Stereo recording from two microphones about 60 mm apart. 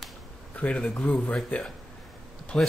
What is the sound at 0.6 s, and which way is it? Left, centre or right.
Speech, left.